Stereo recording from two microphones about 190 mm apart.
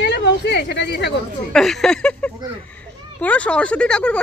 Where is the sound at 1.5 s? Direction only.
Centre (ahead or behind).